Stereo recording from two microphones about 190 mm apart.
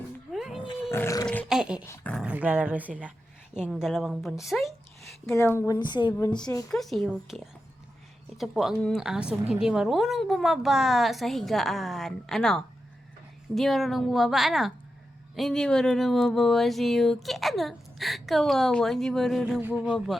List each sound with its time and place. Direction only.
0.3 s wild animals: centre (ahead or behind)
0.8 s a sound: 10° left (ahead or behind)
1.5 s speech: 5° right (ahead or behind)
2.2 s a woman's voice: 10° right (ahead or behind)
5.3 s a woman's voice: 15° left (ahead or behind)
6.7 s a woman's voice: centre (ahead or behind)